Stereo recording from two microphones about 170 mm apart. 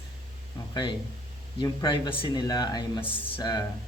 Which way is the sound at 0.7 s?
25° left (ahead or behind).